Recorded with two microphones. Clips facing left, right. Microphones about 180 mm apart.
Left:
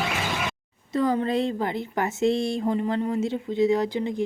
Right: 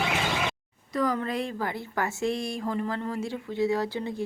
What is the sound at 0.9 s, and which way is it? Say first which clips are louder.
Speech: left 4 dB; 25° left (ahead or behind).